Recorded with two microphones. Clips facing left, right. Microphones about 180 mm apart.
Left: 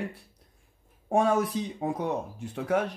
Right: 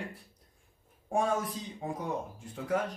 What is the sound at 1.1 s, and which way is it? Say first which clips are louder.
Speech: left 6 dB; 70° left (ahead or behind).